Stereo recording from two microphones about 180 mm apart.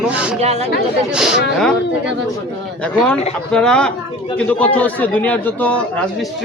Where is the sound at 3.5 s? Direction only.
5° left (ahead or behind).